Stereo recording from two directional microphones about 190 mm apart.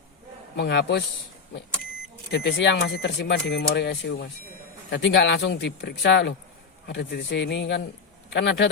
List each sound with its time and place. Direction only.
0.5 s speech: 70° left (ahead or behind)
2.3 s speech: 60° left (ahead or behind)